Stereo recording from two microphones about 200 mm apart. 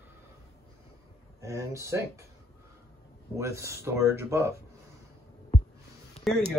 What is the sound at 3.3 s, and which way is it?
Speech, 15° right (ahead or behind).